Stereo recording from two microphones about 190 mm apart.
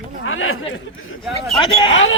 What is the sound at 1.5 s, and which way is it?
Speech, 25° left (ahead or behind).